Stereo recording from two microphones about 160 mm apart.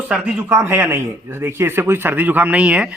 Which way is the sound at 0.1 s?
10° right (ahead or behind).